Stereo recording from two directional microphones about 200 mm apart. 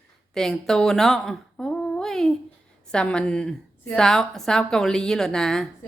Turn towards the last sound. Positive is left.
turn(degrees=0)  # may be behind; listen again after turning